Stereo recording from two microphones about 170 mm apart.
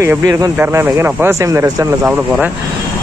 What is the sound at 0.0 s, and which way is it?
Speech, 15° right (ahead or behind).